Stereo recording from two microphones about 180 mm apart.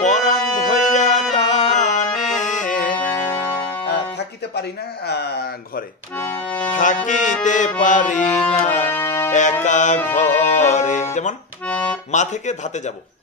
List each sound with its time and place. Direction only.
0.0 s music: 40° left (ahead or behind)
3.0 s music: 10° left (ahead or behind)
3.6 s music: 25° left (ahead or behind)
4.6 s speech: 65° left (ahead or behind)
6.1 s accordion: 15° left (ahead or behind)
6.4 s accordion: 25° left (ahead or behind)
6.7 s music: 45° left (ahead or behind)
8.8 s music: 15° left (ahead or behind)
9.3 s music: 40° left (ahead or behind)
12.1 s music: 40° left (ahead or behind)